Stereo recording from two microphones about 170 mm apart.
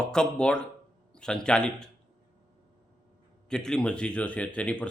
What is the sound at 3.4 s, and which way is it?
A man's voice, 5° left (ahead or behind).